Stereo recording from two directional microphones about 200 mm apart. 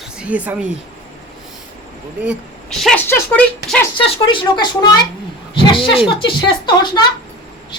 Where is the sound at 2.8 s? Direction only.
5° left (ahead or behind).